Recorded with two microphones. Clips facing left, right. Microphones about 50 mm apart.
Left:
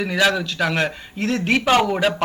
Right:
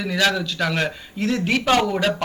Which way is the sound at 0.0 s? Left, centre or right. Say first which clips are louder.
Left 2 dB; centre.